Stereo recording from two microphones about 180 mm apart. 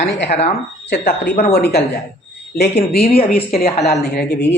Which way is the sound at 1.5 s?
65° left (ahead or behind).